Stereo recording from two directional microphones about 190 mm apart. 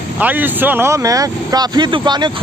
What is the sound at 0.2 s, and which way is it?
Speech, 10° right (ahead or behind).